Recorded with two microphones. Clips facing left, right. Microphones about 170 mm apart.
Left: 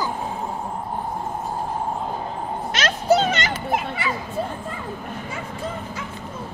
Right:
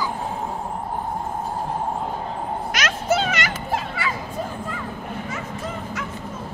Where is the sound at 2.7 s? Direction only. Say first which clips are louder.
Left 4 dB; 35° left (ahead or behind).